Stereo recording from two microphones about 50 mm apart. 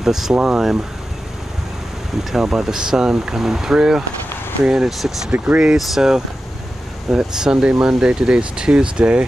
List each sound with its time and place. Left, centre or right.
0.0 s speech: centre
2.3 s speech: centre